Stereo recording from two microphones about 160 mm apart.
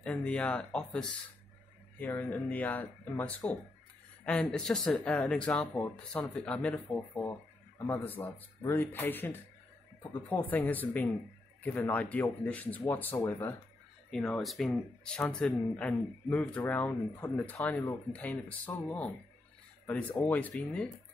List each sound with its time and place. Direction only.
0.0 s speech: 5° left (ahead or behind)
14.1 s speech: centre (ahead or behind)